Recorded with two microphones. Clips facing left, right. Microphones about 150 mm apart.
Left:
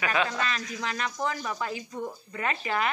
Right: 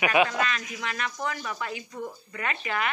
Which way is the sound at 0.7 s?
30° left (ahead or behind).